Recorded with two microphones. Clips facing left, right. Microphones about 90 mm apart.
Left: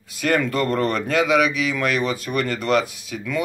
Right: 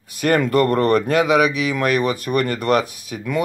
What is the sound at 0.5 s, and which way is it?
Speech, 45° right (ahead or behind).